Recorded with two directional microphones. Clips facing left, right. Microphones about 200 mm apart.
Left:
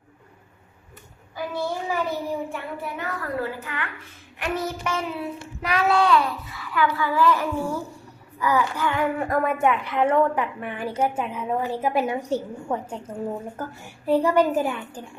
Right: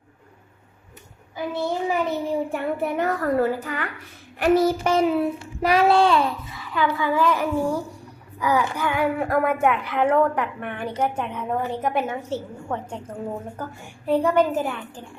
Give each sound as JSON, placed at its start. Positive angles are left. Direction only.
{"t": 1.5, "sound": "a child's voice", "side_deg": -20}
{"t": 2.5, "sound": "a woman's voice", "side_deg": -45}
{"t": 4.4, "sound": "child singing", "side_deg": -40}
{"t": 5.6, "sound": "a child's voice", "side_deg": -35}